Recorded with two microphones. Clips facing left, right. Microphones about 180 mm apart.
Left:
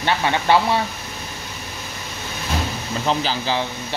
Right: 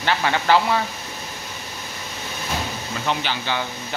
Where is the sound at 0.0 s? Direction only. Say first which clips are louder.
Left 1 dB; 20° left (ahead or behind).